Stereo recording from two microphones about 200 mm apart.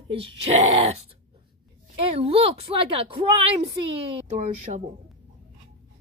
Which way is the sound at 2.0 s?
25° right (ahead or behind).